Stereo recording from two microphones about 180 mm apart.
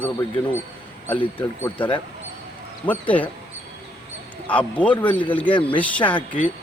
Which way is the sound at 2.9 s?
10° left (ahead or behind).